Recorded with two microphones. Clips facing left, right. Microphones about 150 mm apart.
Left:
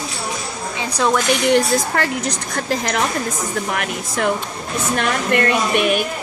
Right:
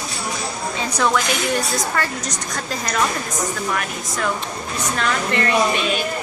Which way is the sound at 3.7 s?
55° left (ahead or behind).